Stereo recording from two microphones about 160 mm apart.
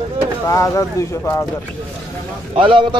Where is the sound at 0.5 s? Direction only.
20° left (ahead or behind).